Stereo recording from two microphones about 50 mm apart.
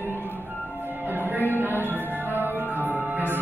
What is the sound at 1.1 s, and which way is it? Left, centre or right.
Music, right.